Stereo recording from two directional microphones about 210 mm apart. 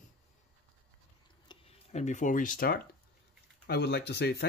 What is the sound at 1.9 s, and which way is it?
Speech, 35° left (ahead or behind).